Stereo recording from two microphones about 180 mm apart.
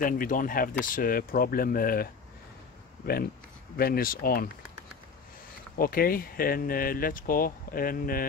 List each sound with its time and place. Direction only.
0.0 s speech: 50° left (ahead or behind)
3.7 s speech: 55° left (ahead or behind)
5.8 s speech: 55° left (ahead or behind)